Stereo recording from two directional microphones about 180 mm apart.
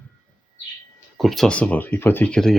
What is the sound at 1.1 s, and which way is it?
Speech, centre (ahead or behind).